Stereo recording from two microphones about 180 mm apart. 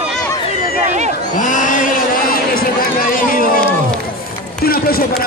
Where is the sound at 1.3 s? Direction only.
45° left (ahead or behind).